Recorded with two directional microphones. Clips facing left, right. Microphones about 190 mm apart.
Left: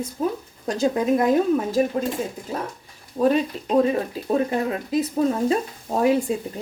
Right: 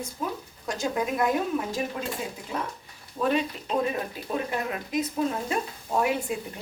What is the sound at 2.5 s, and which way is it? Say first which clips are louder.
Stir: left 3 dB; 35° left (ahead or behind).